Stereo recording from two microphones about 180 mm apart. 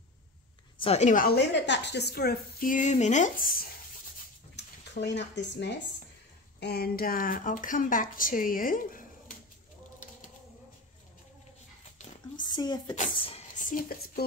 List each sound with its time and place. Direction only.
0.7 s a woman's voice: 35° left (ahead or behind); by 3.6 s 50° left (ahead or behind)
5.0 s speech: 75° left (ahead or behind)
6.6 s a woman's voice: 60° left (ahead or behind)
12.4 s speech: 25° left (ahead or behind)
13.6 s speech: 50° left (ahead or behind)